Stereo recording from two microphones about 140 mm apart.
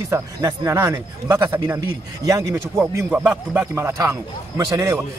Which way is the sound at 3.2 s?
5° right (ahead or behind).